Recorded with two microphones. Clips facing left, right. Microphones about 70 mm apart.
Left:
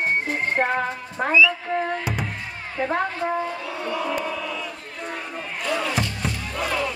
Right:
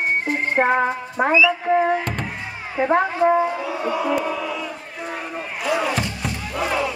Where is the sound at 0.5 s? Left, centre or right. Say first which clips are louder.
Right 6 dB; centre.